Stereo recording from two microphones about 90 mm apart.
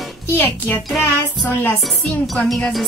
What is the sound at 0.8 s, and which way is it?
Speech, centre (ahead or behind).